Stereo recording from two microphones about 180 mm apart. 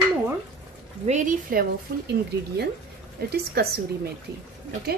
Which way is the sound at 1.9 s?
55° right (ahead or behind).